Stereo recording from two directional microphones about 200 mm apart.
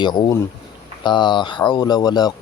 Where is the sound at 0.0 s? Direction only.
20° left (ahead or behind).